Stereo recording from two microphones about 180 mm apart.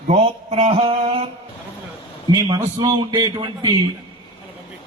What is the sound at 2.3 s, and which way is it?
A man's voice, 25° right (ahead or behind).